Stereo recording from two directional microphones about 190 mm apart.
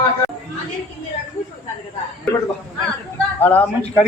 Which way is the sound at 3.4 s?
10° left (ahead or behind).